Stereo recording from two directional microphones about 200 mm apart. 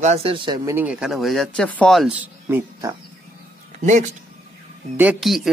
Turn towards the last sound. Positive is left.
turn(degrees=0)  # may be behind; listen again after turning